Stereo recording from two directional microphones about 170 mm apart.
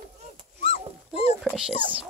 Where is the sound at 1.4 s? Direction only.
5° right (ahead or behind).